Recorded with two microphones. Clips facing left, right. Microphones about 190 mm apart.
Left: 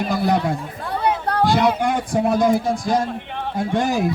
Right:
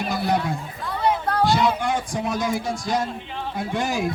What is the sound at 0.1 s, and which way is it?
A man's voice, 50° left (ahead or behind).